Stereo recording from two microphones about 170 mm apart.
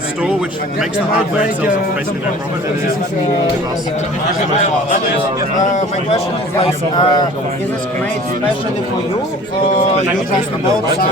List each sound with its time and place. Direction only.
5.5 s speech: 45° left (ahead or behind)
6.6 s a man's voice: 25° left (ahead or behind)